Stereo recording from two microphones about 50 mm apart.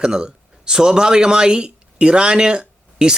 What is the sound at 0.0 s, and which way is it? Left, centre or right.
Speech, centre.